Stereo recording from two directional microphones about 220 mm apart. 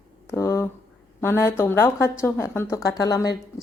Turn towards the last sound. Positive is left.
turn(degrees=15)  # may be behind; listen again after turning